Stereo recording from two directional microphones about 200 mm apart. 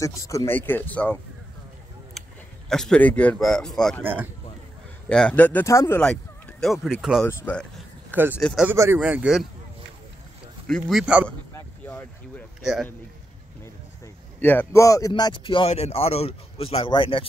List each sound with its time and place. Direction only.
0.0 s speech: 15° left (ahead or behind)
2.2 s a sound: centre (ahead or behind)
2.7 s speech: 5° left (ahead or behind)
4.0 s a man's voice: 10° right (ahead or behind)
5.0 s speech: 5° left (ahead or behind)
7.2 s speech: 10° left (ahead or behind)
8.1 s speech: 10° right (ahead or behind)
8.4 s speech: 5° left (ahead or behind)
8.6 s a man's voice: 10° right (ahead or behind)
10.7 s speech: centre (ahead or behind)
11.2 s a sound: 5° left (ahead or behind)
14.0 s speech: 10° left (ahead or behind); by 17.3 s 25° left (ahead or behind)